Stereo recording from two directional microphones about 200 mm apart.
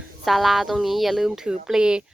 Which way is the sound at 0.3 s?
Centre (ahead or behind).